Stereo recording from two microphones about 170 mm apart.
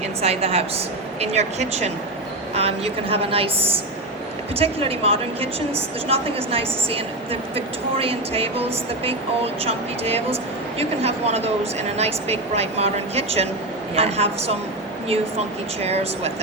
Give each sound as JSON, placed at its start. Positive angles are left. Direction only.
{"t": 0.2, "sound": "speech", "side_deg": -35}
{"t": 4.5, "sound": "speech", "side_deg": -35}
{"t": 9.6, "sound": "speech", "side_deg": -35}